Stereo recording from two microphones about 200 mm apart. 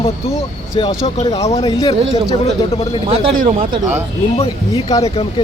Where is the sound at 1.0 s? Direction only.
35° left (ahead or behind).